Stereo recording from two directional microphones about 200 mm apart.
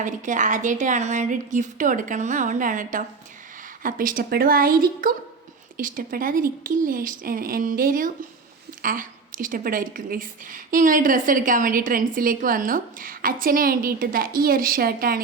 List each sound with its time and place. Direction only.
0.0 s a woman's voice: 40° right (ahead or behind)